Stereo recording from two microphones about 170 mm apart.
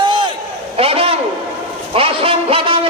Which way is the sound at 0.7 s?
35° right (ahead or behind).